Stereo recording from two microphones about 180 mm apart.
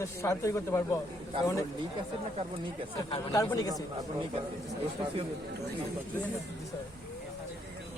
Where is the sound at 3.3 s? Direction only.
20° left (ahead or behind).